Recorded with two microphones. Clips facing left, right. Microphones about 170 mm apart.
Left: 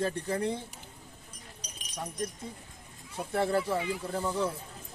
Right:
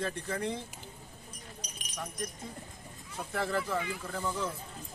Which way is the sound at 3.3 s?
30° left (ahead or behind).